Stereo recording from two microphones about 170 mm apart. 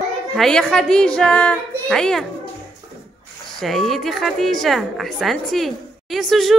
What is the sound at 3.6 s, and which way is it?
A woman's voice, centre (ahead or behind).